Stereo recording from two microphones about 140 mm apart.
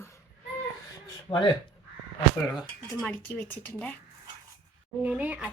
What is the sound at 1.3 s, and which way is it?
Speech, 35° left (ahead or behind).